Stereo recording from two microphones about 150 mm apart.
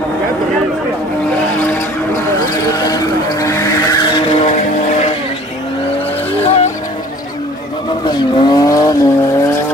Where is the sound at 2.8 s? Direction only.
25° left (ahead or behind).